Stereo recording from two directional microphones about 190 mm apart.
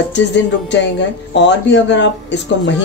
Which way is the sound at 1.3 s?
70° left (ahead or behind).